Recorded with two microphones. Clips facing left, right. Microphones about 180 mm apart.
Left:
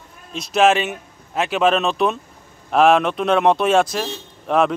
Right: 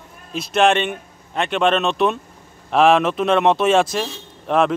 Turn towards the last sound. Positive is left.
turn(degrees=0)  # may be behind; listen again after turning